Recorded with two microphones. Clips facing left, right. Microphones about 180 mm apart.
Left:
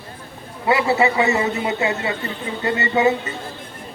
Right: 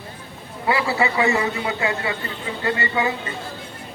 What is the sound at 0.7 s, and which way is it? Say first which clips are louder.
A man's voice: left 4 dB; 25° left (ahead or behind).